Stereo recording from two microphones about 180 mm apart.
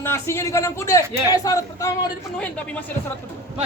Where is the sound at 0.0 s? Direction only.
15° left (ahead or behind).